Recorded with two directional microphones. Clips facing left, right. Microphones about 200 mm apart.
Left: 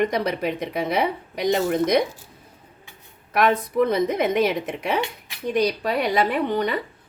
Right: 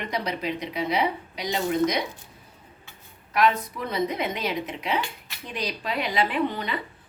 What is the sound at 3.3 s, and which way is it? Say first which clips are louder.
A woman's voice: left 2 dB; 55° left (ahead or behind).